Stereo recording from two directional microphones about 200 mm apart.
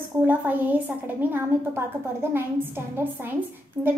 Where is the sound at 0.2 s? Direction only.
10° right (ahead or behind).